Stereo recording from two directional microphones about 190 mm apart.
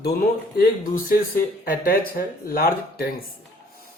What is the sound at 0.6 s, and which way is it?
Speech, 50° left (ahead or behind).